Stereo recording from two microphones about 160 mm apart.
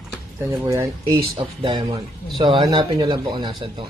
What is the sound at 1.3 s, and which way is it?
Speech, 30° right (ahead or behind).